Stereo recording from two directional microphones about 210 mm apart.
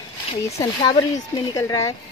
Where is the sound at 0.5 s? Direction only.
15° left (ahead or behind).